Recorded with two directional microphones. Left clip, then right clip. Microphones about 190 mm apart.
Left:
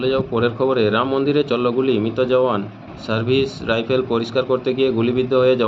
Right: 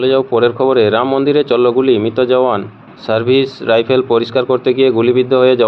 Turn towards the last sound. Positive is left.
turn(degrees=-40)  # may be behind; listen again after turning